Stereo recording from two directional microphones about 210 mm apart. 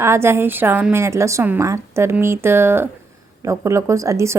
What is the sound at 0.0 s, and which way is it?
A woman's voice, 10° right (ahead or behind).